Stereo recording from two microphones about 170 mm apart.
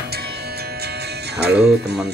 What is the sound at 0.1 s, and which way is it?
Music, 70° right (ahead or behind).